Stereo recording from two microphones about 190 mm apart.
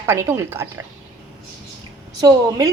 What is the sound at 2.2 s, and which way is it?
Speech, 20° right (ahead or behind).